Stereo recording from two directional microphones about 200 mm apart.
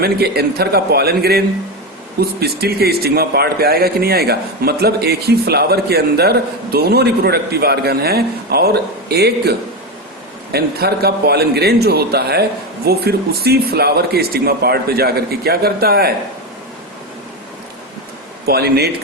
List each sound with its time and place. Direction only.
0.0 s a man's voice: 50° right (ahead or behind)
18.4 s a man's voice: 50° right (ahead or behind)